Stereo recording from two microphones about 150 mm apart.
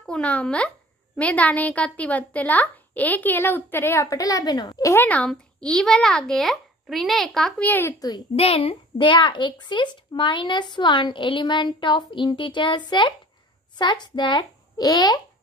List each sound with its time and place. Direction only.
0.0 s a child's voice: 5° left (ahead or behind)
8.4 s a child's voice: 40° left (ahead or behind); by 15.1 s 25° left (ahead or behind)